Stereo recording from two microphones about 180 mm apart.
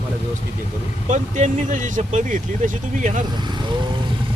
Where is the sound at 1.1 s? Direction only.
45° right (ahead or behind).